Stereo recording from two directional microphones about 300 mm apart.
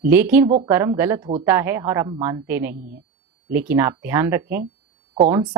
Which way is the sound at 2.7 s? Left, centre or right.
Right.